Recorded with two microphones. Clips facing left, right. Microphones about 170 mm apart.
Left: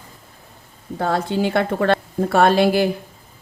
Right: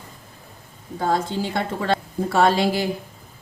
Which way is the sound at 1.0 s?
65° left (ahead or behind).